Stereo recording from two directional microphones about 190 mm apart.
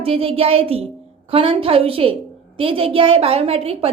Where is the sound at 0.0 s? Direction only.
30° right (ahead or behind).